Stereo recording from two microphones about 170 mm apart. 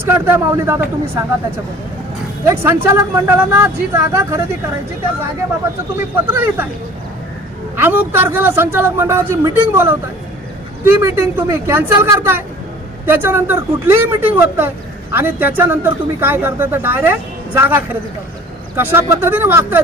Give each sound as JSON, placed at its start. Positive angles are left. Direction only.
{"t": 0.0, "sound": "a man's voice", "side_deg": -15}
{"t": 2.4, "sound": "a man's voice", "side_deg": -15}
{"t": 6.0, "sound": "a man's voice", "side_deg": -10}
{"t": 7.8, "sound": "a man's voice", "side_deg": -10}